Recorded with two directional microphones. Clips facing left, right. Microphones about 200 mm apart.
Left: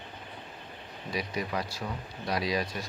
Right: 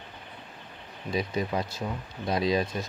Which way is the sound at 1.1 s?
25° right (ahead or behind).